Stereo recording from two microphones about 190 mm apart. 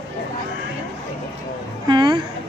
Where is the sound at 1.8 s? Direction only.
25° right (ahead or behind).